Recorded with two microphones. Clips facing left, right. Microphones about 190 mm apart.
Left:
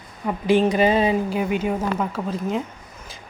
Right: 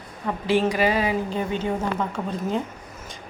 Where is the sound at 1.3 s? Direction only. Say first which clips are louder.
Left 3 dB; 10° left (ahead or behind).